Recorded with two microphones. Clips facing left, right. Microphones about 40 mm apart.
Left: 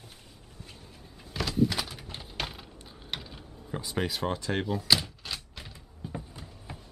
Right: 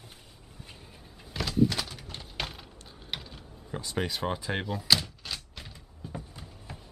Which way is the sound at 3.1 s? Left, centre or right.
Centre.